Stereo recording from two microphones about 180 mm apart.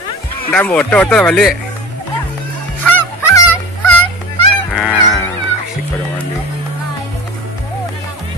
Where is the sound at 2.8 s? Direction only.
15° left (ahead or behind).